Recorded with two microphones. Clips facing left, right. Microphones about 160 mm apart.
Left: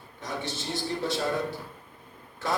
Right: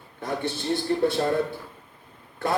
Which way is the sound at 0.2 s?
55° right (ahead or behind).